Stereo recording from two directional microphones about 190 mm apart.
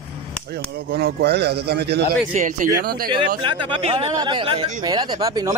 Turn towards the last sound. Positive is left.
turn(degrees=-20)  # may be behind; listen again after turning